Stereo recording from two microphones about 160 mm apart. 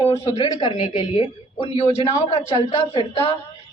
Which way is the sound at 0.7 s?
45° left (ahead or behind).